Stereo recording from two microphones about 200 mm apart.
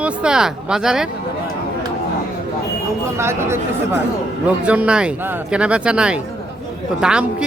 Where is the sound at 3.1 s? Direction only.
15° right (ahead or behind).